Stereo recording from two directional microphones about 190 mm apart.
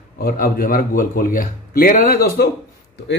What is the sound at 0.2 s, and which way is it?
A man's voice, 50° left (ahead or behind).